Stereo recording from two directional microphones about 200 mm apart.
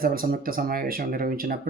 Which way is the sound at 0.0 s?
45° right (ahead or behind).